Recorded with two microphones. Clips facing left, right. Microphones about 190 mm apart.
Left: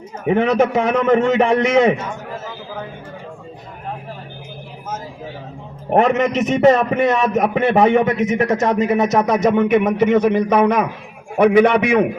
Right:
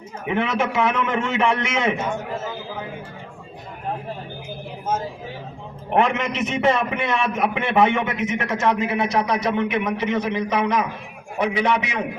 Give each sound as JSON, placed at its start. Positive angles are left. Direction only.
{"t": 0.3, "sound": "a man's voice", "side_deg": 40}
{"t": 5.9, "sound": "a man's voice", "side_deg": 40}